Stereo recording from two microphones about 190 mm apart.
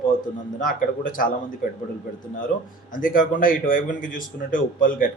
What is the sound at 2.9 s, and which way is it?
A man's voice, 45° left (ahead or behind).